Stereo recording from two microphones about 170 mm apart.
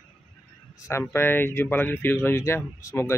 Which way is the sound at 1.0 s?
15° left (ahead or behind).